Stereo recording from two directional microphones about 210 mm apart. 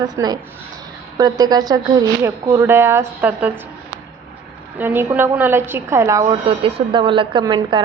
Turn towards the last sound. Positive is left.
turn(degrees=-20)  # may be behind; listen again after turning